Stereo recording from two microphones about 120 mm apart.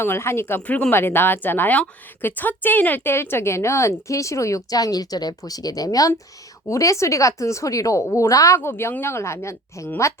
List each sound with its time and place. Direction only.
0.0 s speech: 20° left (ahead or behind)